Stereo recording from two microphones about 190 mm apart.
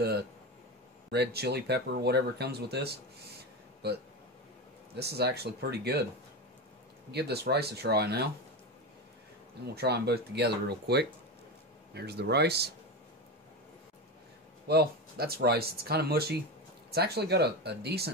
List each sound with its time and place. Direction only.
1.1 s speech: 60° right (ahead or behind)
4.9 s speech: 55° right (ahead or behind)
7.1 s speech: 60° right (ahead or behind)
9.8 s speech: 60° right (ahead or behind)
14.7 s speech: 55° right (ahead or behind)